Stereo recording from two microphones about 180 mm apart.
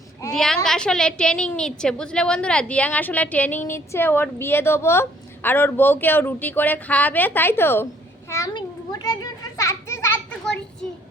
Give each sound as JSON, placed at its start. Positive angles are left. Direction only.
{"t": 0.3, "sound": "a woman's voice", "side_deg": 0}
{"t": 8.3, "sound": "children playing", "side_deg": 20}